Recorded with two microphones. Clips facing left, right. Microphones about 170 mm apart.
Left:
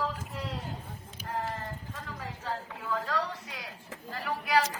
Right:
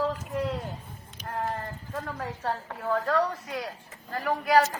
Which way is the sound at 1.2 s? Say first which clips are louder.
Right 3 dB; 55° right (ahead or behind).